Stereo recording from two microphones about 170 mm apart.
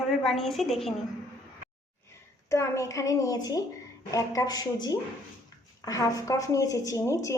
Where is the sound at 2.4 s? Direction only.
15° left (ahead or behind).